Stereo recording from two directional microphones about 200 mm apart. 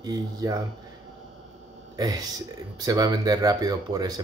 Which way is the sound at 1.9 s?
20° right (ahead or behind).